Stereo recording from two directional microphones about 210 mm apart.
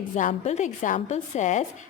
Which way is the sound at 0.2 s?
35° left (ahead or behind).